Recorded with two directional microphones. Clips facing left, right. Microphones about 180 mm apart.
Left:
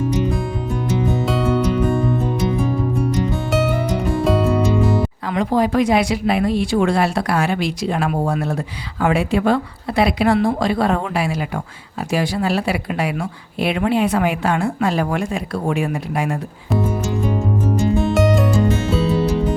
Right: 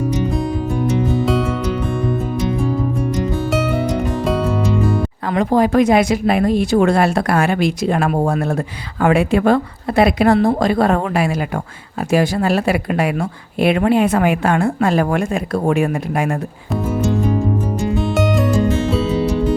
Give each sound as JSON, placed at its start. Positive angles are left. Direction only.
{"t": 1.3, "sound": "music", "side_deg": 0}
{"t": 4.2, "sound": "music", "side_deg": 0}
{"t": 5.3, "sound": "speech", "side_deg": -50}
{"t": 18.1, "sound": "music", "side_deg": 0}